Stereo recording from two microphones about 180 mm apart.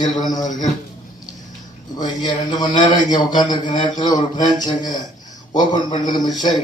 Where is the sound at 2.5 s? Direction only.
20° left (ahead or behind).